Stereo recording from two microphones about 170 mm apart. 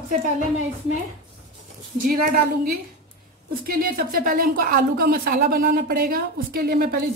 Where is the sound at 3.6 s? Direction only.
60° right (ahead or behind).